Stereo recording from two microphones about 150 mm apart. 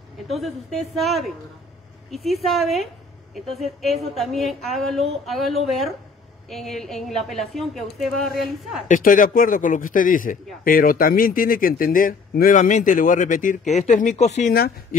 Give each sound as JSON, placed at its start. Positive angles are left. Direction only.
{"t": 0.3, "sound": "a woman's voice", "side_deg": 0}
{"t": 8.8, "sound": "a man's voice", "side_deg": 65}
{"t": 14.5, "sound": "speech", "side_deg": 90}